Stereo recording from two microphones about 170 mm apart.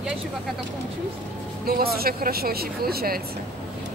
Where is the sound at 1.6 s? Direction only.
60° right (ahead or behind).